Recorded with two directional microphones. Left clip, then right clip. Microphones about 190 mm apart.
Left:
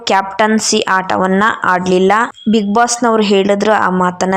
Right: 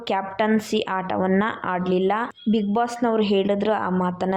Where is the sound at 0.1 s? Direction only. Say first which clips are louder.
Left 10 dB; 20° left (ahead or behind).